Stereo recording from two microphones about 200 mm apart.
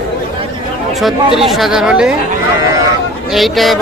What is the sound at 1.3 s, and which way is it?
Speech, centre (ahead or behind).